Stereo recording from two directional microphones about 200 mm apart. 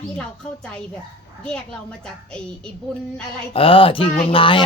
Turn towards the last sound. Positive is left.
turn(degrees=25)  # may be behind; listen again after turning